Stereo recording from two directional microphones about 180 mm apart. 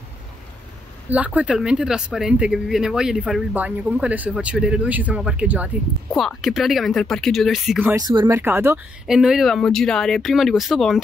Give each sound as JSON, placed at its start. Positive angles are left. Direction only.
{"t": 1.1, "sound": "speech", "side_deg": -10}
{"t": 7.8, "sound": "speech", "side_deg": -20}
{"t": 8.4, "sound": "speech", "side_deg": -10}